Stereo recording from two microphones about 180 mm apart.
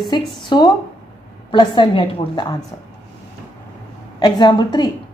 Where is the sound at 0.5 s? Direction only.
25° left (ahead or behind).